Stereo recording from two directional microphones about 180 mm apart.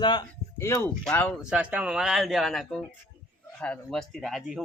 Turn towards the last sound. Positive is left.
turn(degrees=0)  # may be behind; listen again after turning